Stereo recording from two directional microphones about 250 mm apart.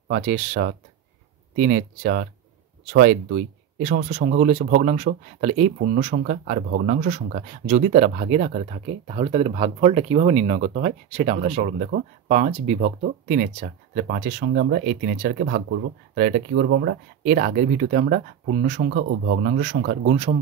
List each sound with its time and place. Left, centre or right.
0.1 s speech: right
19.0 s speech: right
19.6 s speech: right